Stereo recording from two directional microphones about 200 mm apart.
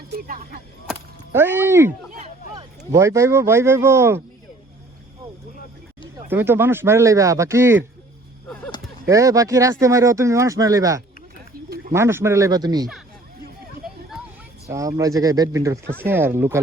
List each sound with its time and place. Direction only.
0.1 s speech: 45° right (ahead or behind)
1.3 s speech: 10° right (ahead or behind)
6.2 s speech: 10° right (ahead or behind)
9.0 s speech: 15° right (ahead or behind)
14.7 s speech: 15° right (ahead or behind)